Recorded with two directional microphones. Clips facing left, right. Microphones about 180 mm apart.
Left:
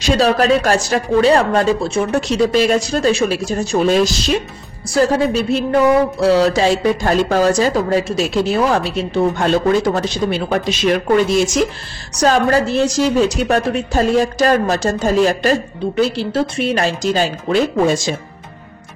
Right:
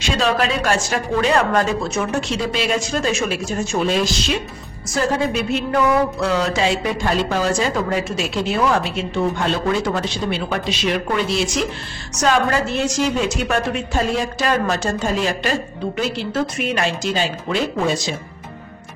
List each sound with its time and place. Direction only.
0.0 s a woman's voice: 40° left (ahead or behind)